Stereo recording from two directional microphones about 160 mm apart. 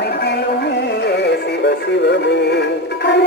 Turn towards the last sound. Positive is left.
turn(degrees=90)